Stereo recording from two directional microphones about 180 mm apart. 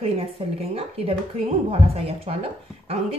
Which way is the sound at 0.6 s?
35° right (ahead or behind).